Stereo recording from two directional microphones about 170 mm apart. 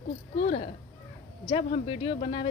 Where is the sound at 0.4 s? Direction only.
35° left (ahead or behind).